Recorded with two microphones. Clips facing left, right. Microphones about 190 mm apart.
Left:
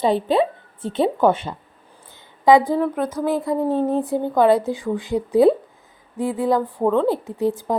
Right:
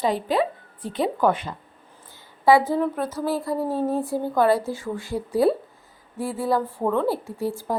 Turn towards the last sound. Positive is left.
turn(degrees=20)  # may be behind; listen again after turning